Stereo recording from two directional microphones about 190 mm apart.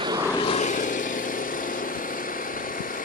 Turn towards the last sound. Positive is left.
turn(degrees=45)  # may be behind; listen again after turning